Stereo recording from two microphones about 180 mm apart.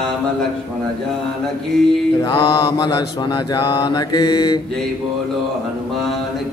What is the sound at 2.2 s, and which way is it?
Mantra, 30° left (ahead or behind).